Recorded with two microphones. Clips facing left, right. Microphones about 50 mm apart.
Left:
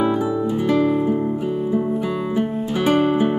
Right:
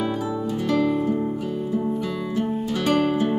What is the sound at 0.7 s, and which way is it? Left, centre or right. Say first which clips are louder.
Music: left 3 dB; centre.